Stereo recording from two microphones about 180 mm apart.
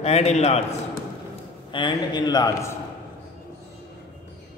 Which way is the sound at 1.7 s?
25° left (ahead or behind).